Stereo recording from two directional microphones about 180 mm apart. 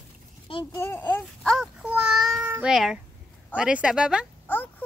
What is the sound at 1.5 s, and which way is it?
Child singing, 5° right (ahead or behind).